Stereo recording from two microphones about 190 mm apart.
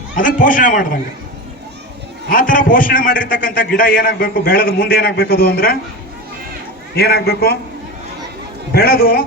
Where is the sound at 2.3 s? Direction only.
45° left (ahead or behind).